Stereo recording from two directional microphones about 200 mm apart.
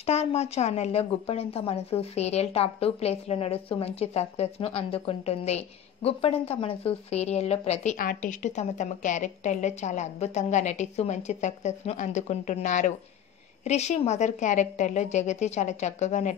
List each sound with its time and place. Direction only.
0.0 s speech: 30° left (ahead or behind)